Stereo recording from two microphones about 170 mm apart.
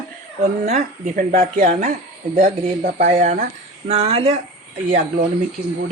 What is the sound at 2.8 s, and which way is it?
Speech, 70° right (ahead or behind).